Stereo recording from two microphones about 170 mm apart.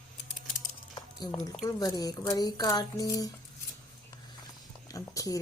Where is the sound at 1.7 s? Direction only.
20° left (ahead or behind).